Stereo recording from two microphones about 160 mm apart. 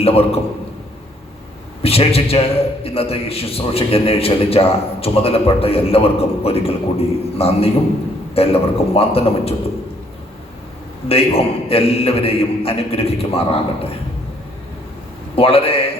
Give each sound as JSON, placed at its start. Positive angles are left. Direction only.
{"t": 0.0, "sound": "a man's voice", "side_deg": 40}
{"t": 1.8, "sound": "a man's voice", "side_deg": 35}
{"t": 11.1, "sound": "a man's voice", "side_deg": 35}
{"t": 15.4, "sound": "a man's voice", "side_deg": 35}